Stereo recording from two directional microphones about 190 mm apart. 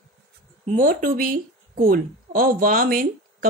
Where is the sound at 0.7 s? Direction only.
45° right (ahead or behind).